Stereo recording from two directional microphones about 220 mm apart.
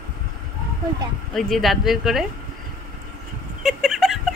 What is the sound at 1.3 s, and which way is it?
Speech, centre (ahead or behind).